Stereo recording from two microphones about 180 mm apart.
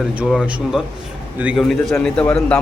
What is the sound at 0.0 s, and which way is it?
Speech, 5° right (ahead or behind).